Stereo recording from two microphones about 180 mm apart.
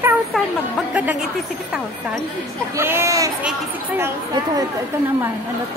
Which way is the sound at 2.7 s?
15° right (ahead or behind).